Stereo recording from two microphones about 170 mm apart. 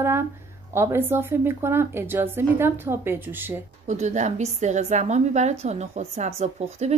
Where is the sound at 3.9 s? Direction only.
45° right (ahead or behind).